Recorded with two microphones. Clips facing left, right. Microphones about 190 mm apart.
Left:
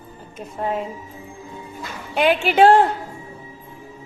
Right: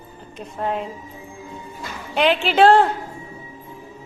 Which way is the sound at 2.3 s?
10° left (ahead or behind).